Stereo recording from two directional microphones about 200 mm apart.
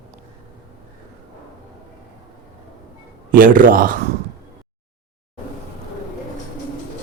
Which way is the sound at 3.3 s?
45° right (ahead or behind).